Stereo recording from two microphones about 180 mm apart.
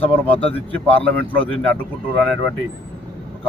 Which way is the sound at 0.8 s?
30° left (ahead or behind).